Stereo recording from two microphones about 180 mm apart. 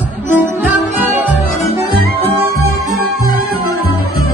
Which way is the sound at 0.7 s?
10° right (ahead or behind).